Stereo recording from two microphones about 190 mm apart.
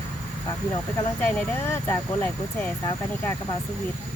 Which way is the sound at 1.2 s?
5° left (ahead or behind).